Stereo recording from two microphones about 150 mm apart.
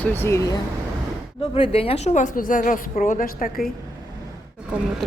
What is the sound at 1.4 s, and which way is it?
A woman's voice, 40° left (ahead or behind).